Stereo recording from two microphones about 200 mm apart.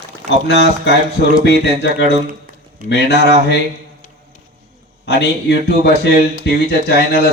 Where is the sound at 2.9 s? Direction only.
60° left (ahead or behind).